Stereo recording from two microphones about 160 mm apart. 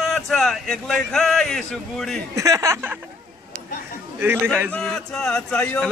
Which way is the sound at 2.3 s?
20° right (ahead or behind).